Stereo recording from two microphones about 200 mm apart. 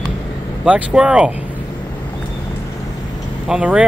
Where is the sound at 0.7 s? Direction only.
5° right (ahead or behind).